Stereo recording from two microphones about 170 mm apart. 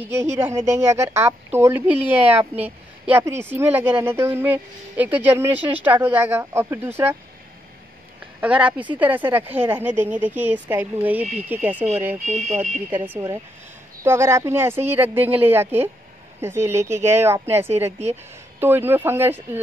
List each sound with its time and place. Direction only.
0.1 s a woman's voice: 15° right (ahead or behind)
8.4 s a woman's voice: 5° right (ahead or behind)
12.3 s speech: 45° right (ahead or behind)
12.5 s a woman's voice: 10° right (ahead or behind)